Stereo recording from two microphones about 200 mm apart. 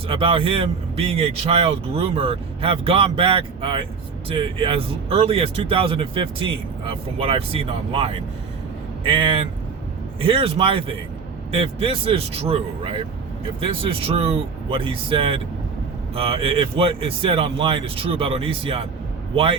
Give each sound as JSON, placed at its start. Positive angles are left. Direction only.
{"t": 0.1, "sound": "a man's voice", "side_deg": -25}